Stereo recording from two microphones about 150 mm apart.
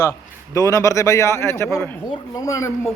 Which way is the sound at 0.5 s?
20° left (ahead or behind).